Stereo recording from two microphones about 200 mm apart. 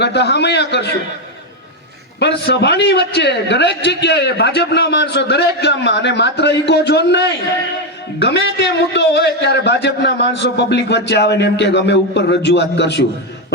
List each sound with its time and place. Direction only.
0.0 s a man's voice: 60° left (ahead or behind)
2.1 s a man's voice: 60° left (ahead or behind)